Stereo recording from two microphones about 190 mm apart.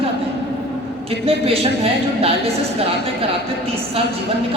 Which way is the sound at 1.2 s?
30° right (ahead or behind).